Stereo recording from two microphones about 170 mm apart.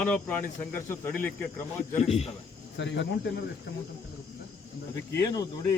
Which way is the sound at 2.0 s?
40° left (ahead or behind).